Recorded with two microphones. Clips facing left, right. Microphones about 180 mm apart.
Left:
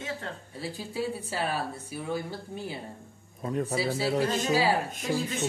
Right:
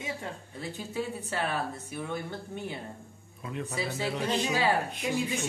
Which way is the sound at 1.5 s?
35° left (ahead or behind).